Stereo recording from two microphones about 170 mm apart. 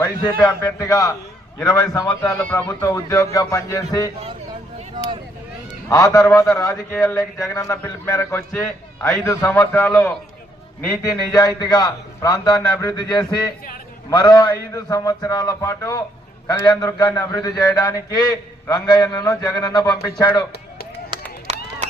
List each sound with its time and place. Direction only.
0.0 s a man's voice: 20° left (ahead or behind)
5.9 s a man's voice: 20° left (ahead or behind)
21.1 s run: 30° right (ahead or behind)